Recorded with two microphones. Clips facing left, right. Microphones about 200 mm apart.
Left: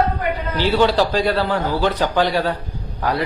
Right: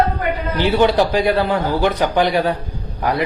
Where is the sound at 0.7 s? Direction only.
20° right (ahead or behind).